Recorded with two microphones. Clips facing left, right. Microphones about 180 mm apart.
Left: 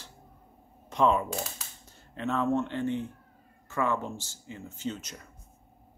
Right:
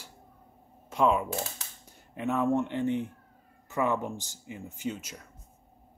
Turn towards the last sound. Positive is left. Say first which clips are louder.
# even
turn(degrees=-10)  # may be behind; listen again after turning